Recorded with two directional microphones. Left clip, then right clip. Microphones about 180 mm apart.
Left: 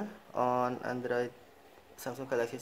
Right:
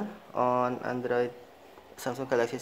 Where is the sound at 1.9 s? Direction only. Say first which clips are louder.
Right 5 dB; 20° right (ahead or behind).